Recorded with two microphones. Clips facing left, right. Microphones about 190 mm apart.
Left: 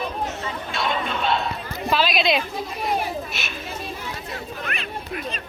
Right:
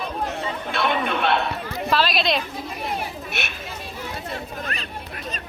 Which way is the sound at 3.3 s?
65° right (ahead or behind).